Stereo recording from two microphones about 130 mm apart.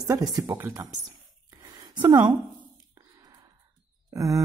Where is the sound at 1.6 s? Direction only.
35° right (ahead or behind).